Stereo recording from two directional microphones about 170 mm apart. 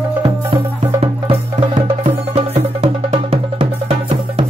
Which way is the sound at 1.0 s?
30° right (ahead or behind).